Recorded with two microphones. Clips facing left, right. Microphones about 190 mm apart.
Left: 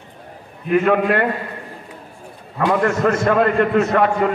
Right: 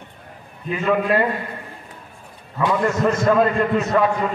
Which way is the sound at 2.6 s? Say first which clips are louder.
Left 2 dB; 65° left (ahead or behind).